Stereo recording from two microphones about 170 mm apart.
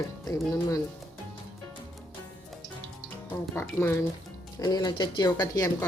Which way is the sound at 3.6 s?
15° left (ahead or behind).